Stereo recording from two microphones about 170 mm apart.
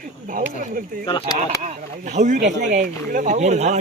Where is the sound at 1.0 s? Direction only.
25° left (ahead or behind).